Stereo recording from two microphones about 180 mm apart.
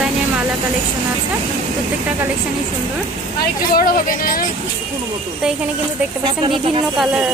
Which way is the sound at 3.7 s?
55° left (ahead or behind).